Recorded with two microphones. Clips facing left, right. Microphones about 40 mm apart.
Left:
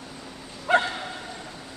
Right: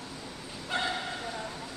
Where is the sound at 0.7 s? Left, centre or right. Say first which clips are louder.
Left 11 dB; left.